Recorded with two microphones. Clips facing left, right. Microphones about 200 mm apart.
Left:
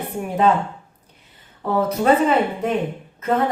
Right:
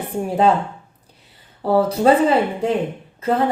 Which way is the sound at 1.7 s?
30° right (ahead or behind).